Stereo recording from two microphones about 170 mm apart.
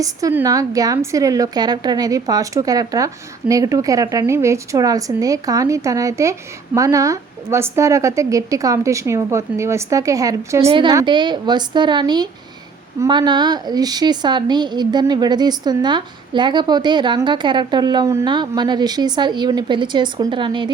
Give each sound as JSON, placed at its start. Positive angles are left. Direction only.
{"t": 0.0, "sound": "a woman's voice", "side_deg": -20}
{"t": 10.7, "sound": "a woman's voice", "side_deg": -30}